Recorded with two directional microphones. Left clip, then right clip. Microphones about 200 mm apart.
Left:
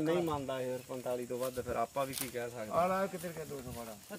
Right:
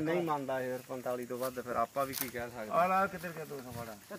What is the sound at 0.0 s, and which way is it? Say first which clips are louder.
Speech: even; 20° left (ahead or behind).